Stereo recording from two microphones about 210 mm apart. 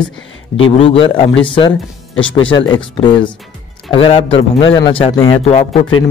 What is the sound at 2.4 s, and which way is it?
Speech, 20° left (ahead or behind).